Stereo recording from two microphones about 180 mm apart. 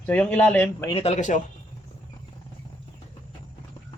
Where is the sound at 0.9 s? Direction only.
35° left (ahead or behind).